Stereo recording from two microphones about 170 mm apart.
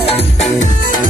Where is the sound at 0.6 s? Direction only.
50° left (ahead or behind).